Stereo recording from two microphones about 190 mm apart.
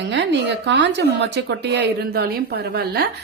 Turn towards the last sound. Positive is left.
turn(degrees=-55)  # may be behind; listen again after turning